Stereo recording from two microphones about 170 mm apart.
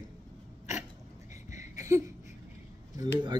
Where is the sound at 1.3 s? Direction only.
45° left (ahead or behind).